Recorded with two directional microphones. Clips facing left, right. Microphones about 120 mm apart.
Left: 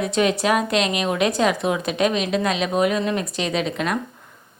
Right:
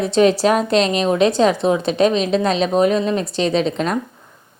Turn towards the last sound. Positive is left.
turn(degrees=-30)  # may be behind; listen again after turning